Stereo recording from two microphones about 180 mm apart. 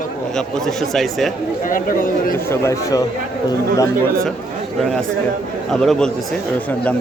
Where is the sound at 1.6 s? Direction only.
50° left (ahead or behind).